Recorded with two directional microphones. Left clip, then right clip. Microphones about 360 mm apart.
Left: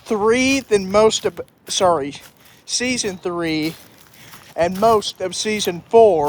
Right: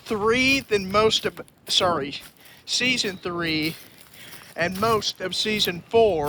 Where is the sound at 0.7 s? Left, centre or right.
Centre.